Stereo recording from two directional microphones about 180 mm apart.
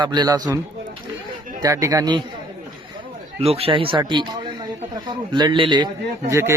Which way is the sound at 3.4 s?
35° right (ahead or behind).